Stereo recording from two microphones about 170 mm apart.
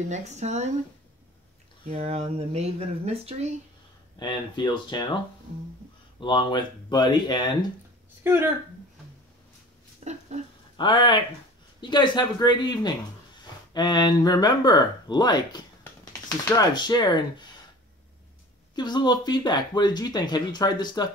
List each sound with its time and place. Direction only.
0.1 s speech: 40° right (ahead or behind)
1.9 s speech: 35° right (ahead or behind)
4.2 s speech: 25° left (ahead or behind)
6.1 s speech: 25° left (ahead or behind)
8.2 s speech: 15° right (ahead or behind)
9.9 s speech: 40° right (ahead or behind)
10.8 s speech: 30° left (ahead or behind)
18.8 s speech: 25° left (ahead or behind)